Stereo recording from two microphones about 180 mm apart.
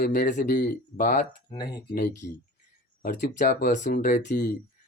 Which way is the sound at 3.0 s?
50° left (ahead or behind).